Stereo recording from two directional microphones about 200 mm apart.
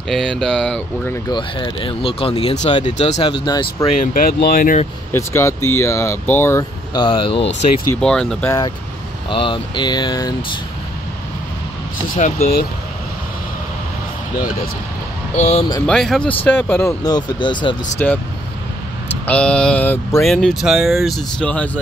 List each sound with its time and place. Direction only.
0.1 s speech: centre (ahead or behind)
1.3 s speech: 20° left (ahead or behind)
3.4 s speech: 20° left (ahead or behind)
4.0 s speech: 45° left (ahead or behind)
5.1 s speech: 15° left (ahead or behind)
8.0 s speech: 5° left (ahead or behind)
9.3 s speech: 25° left (ahead or behind)
15.3 s speech: 35° left (ahead or behind)
15.9 s speech: centre (ahead or behind); by 17.7 s 25° left (ahead or behind)
17.9 s speech: 10° left (ahead or behind)
19.2 s speech: 5° left (ahead or behind)